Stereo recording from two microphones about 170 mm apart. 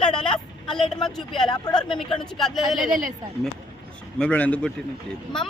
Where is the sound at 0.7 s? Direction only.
Centre (ahead or behind).